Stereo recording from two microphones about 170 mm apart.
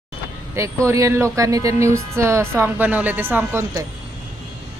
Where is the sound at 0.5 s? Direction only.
15° right (ahead or behind).